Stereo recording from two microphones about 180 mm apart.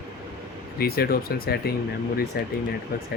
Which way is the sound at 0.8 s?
60° left (ahead or behind).